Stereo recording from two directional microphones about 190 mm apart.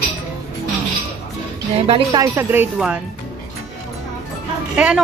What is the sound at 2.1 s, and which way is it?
Speech, 10° right (ahead or behind).